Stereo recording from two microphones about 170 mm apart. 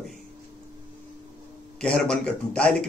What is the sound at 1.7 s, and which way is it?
A man's voice, 5° left (ahead or behind).